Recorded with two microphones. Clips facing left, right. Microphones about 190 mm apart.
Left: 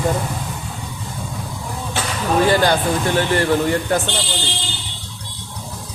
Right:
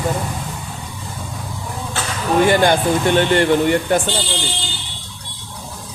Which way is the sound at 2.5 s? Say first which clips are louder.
Right 2 dB; 20° right (ahead or behind).